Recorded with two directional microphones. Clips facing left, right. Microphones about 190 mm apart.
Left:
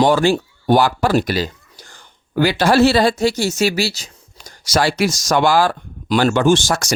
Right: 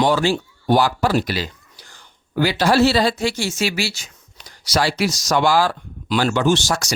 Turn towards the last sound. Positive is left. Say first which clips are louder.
# left 3 dB
turn(degrees=50)  # may be behind; listen again after turning